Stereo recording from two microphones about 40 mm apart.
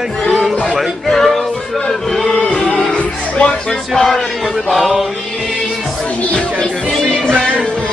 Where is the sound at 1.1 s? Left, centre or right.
Centre.